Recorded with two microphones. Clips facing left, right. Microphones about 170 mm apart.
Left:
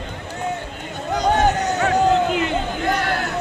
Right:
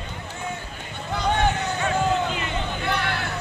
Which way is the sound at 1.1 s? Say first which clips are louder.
Left 5 dB; 40° left (ahead or behind).